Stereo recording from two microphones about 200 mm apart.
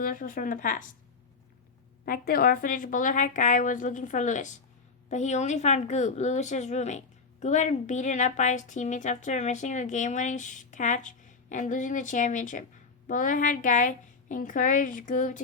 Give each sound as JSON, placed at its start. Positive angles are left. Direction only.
{"t": 0.0, "sound": "speech", "side_deg": 45}
{"t": 2.0, "sound": "speech", "side_deg": 45}